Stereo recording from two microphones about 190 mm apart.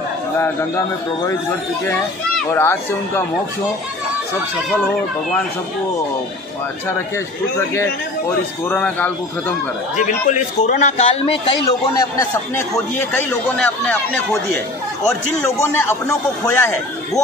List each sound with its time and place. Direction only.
0.4 s a man's voice: 15° left (ahead or behind)
2.3 s a man's voice: 10° left (ahead or behind)
8.6 s a man's voice: 10° left (ahead or behind)
9.9 s a man's voice: 40° left (ahead or behind)
11.8 s a man's voice: 20° left (ahead or behind)